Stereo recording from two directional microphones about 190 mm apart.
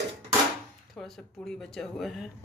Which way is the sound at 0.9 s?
5° left (ahead or behind).